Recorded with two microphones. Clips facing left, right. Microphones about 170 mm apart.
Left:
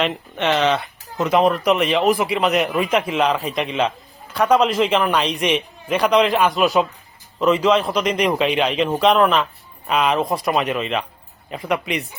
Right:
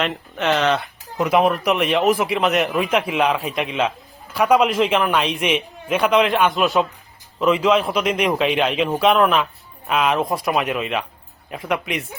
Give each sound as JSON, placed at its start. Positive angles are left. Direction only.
{"t": 0.0, "sound": "speech", "side_deg": 0}